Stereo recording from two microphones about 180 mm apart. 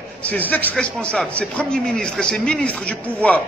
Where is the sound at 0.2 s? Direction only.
10° left (ahead or behind).